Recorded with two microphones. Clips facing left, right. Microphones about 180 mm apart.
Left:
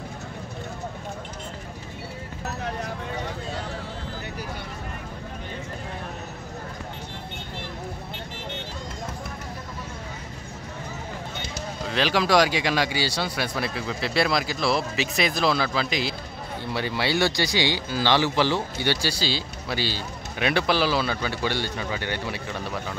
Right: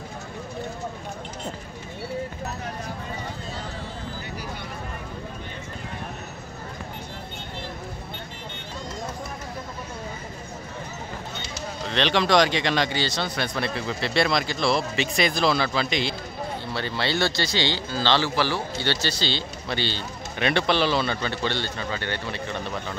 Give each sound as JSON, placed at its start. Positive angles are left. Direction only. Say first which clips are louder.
{"t": 11.8, "sound": "speech", "louder": "right 1 dB", "side_deg": 5}